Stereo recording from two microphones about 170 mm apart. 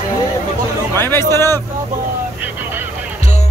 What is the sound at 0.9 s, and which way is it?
Speech, 15° left (ahead or behind).